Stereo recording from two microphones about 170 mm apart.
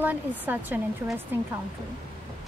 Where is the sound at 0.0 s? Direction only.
10° right (ahead or behind).